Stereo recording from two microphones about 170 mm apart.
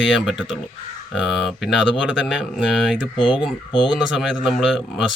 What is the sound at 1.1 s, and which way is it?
Speech, centre (ahead or behind).